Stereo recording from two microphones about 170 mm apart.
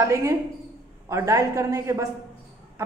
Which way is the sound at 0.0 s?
15° right (ahead or behind).